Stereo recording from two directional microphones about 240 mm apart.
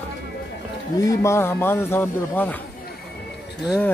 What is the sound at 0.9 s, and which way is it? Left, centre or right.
A man's voice, centre.